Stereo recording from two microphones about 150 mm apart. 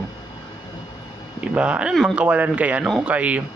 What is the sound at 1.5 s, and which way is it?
A man's voice, 10° right (ahead or behind).